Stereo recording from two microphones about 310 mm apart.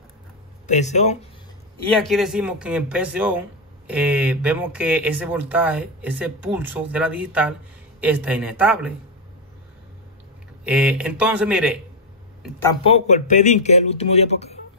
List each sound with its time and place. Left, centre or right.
0.7 s speech: left
2.0 s speech: centre
10.6 s speech: centre
12.4 s speech: centre
12.8 s speech: left